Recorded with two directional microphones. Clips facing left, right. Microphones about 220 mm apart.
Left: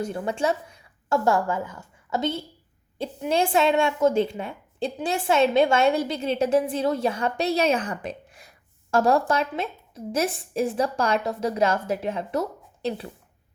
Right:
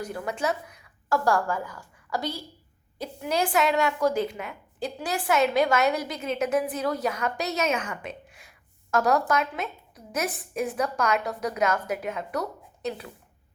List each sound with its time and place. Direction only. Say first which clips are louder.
0.0 s a woman's voice: left 4 dB; 25° left (ahead or behind)